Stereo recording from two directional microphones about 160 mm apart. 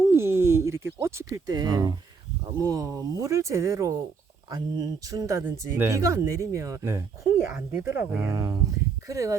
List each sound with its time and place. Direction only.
0.0 s speech: 15° right (ahead or behind)